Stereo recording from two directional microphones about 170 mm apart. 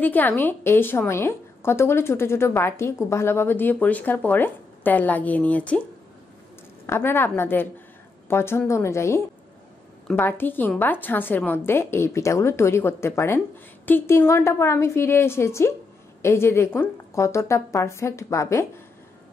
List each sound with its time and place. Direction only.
0.0 s a woman's voice: 10° left (ahead or behind)
6.9 s a woman's voice: 15° left (ahead or behind)